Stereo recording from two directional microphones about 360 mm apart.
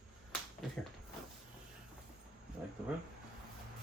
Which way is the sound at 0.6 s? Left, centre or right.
Centre.